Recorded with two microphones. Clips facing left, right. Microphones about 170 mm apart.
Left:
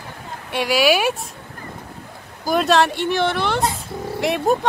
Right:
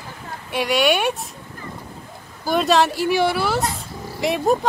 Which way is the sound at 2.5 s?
Centre (ahead or behind).